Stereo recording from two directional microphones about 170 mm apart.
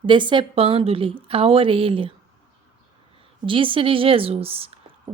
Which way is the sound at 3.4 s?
30° right (ahead or behind).